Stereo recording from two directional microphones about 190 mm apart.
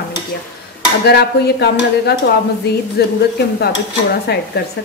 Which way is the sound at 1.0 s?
60° left (ahead or behind).